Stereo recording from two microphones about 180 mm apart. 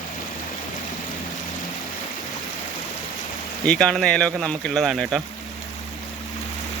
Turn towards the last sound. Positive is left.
turn(degrees=0)  # may be behind; listen again after turning